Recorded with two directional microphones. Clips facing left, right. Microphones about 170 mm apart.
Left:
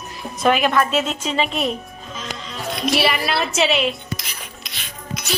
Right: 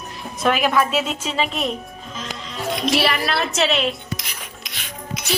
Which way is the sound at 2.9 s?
5° left (ahead or behind).